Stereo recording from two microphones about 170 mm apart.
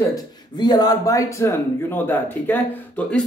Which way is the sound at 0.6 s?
25° left (ahead or behind).